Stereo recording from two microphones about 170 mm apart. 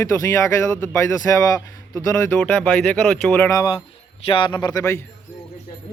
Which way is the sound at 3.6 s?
25° left (ahead or behind).